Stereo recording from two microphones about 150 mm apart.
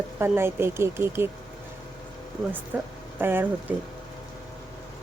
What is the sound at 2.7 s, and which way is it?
Speech, 10° right (ahead or behind).